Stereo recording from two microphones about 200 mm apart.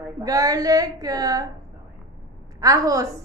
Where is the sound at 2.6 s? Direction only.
15° right (ahead or behind).